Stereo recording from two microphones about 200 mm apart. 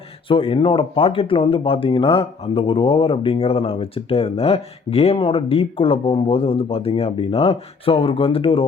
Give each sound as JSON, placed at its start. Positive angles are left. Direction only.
{"t": 0.3, "sound": "speech", "side_deg": 25}